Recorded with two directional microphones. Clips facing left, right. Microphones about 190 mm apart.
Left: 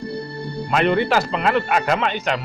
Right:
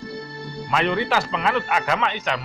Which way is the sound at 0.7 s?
50° left (ahead or behind).